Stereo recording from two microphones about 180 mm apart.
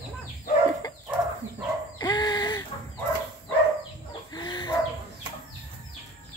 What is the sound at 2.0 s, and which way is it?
Dog, 20° left (ahead or behind).